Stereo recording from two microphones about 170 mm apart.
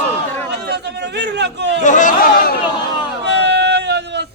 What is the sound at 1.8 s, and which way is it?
Chatter, 50° left (ahead or behind).